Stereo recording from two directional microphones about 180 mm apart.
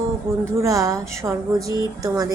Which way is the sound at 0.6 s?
15° right (ahead or behind).